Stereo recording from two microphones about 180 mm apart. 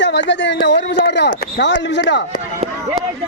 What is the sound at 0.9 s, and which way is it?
Speech, 70° left (ahead or behind).